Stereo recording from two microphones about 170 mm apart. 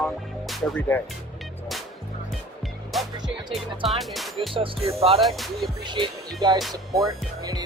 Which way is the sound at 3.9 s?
Centre (ahead or behind).